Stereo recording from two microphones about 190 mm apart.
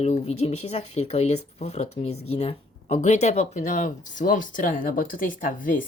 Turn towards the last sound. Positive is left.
turn(degrees=45)  # may be behind; listen again after turning